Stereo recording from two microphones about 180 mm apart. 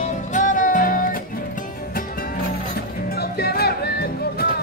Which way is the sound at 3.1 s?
60° left (ahead or behind).